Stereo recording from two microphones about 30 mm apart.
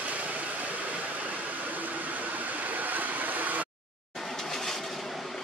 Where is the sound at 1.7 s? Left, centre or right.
Right.